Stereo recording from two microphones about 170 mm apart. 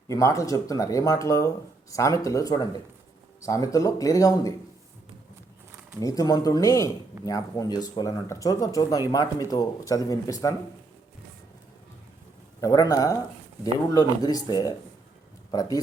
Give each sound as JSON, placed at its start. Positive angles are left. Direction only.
{"t": 0.1, "sound": "speech", "side_deg": 20}
{"t": 6.0, "sound": "speech", "side_deg": 20}
{"t": 12.6, "sound": "speech", "side_deg": 20}